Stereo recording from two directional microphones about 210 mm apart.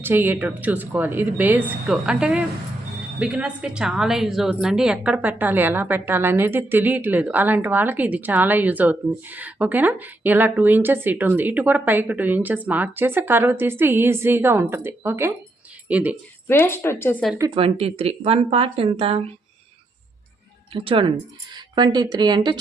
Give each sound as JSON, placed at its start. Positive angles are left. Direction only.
{"t": 0.0, "sound": "a woman's voice", "side_deg": -10}
{"t": 16.5, "sound": "speech", "side_deg": 10}
{"t": 17.5, "sound": "speech", "side_deg": -25}
{"t": 20.7, "sound": "speech", "side_deg": -25}